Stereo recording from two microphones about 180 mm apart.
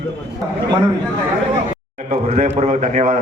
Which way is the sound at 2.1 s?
40° right (ahead or behind).